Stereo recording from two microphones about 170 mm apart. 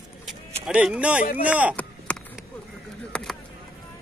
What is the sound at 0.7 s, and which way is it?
Speech, 5° right (ahead or behind).